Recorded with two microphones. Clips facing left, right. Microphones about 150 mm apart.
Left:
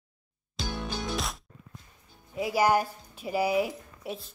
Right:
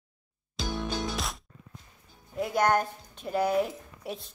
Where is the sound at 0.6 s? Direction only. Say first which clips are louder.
Right 2 dB; centre (ahead or behind).